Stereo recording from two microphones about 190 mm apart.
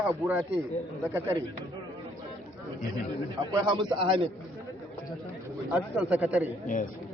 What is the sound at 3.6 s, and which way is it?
Speech, 25° right (ahead or behind).